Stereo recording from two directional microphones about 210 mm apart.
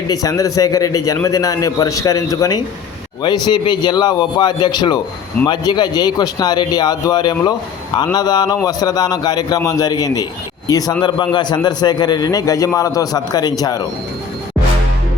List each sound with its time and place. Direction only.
0.1 s a man's voice: 15° left (ahead or behind)